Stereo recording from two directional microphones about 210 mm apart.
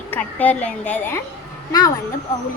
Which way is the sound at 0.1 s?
5° left (ahead or behind).